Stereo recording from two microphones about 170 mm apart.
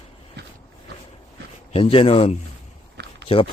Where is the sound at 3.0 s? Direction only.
75° right (ahead or behind).